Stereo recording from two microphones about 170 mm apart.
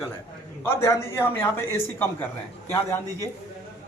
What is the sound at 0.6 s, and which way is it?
A man's voice, 15° left (ahead or behind).